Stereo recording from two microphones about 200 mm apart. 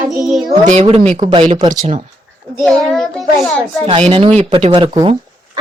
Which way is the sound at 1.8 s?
35° right (ahead or behind).